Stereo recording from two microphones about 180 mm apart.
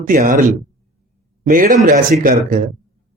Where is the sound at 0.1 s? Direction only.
50° right (ahead or behind).